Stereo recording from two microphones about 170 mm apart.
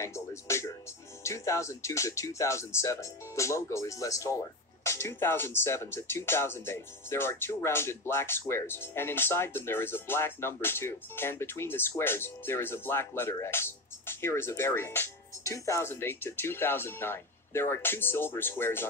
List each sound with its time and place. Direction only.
0.0 s speech: 15° left (ahead or behind)